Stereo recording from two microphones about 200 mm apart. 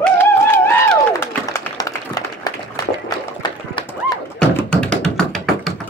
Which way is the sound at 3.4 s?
25° left (ahead or behind).